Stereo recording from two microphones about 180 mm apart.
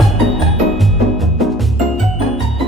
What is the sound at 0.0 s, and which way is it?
Music, centre (ahead or behind).